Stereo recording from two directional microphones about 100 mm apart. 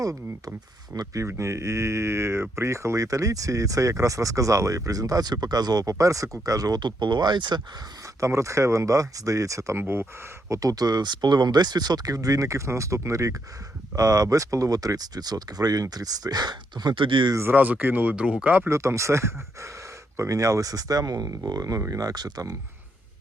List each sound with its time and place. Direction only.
0.0 s speech: 35° right (ahead or behind)
8.0 s speech: 30° right (ahead or behind); by 17.3 s 50° right (ahead or behind)
17.3 s speech: 20° right (ahead or behind)
18.7 s speech: 30° right (ahead or behind)